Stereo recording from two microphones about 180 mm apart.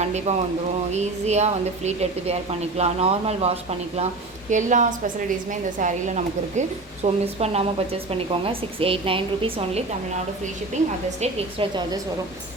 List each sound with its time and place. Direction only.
0.0 s a woman's voice: 40° right (ahead or behind)
11.2 s a woman's voice: 25° right (ahead or behind)